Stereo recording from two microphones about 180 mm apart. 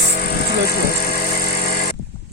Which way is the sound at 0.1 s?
60° left (ahead or behind).